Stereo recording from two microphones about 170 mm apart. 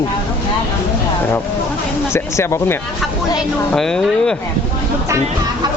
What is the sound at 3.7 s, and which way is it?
Speech, 5° left (ahead or behind).